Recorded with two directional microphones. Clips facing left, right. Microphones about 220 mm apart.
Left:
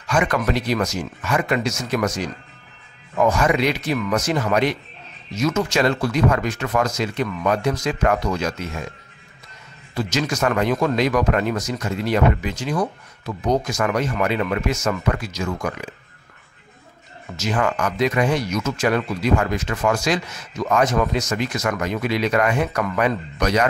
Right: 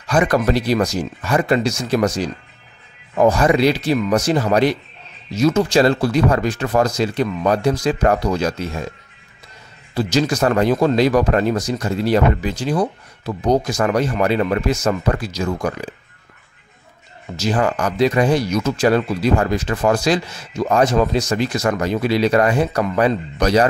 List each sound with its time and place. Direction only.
0.0 s speech: 35° right (ahead or behind)
9.9 s speech: 35° right (ahead or behind)
17.4 s speech: 35° right (ahead or behind)